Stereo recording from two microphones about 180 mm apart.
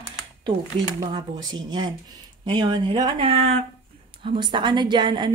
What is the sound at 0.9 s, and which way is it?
Speech, 25° right (ahead or behind).